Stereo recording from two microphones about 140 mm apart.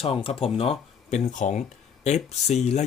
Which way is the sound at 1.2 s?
60° left (ahead or behind).